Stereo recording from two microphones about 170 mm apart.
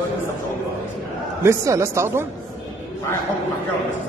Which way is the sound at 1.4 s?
15° right (ahead or behind).